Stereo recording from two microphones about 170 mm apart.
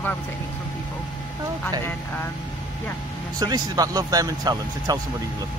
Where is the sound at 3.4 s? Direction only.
20° right (ahead or behind).